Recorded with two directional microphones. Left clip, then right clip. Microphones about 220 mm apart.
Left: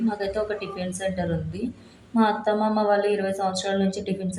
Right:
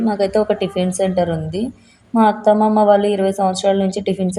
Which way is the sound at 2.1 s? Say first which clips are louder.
Right 9 dB; 40° right (ahead or behind).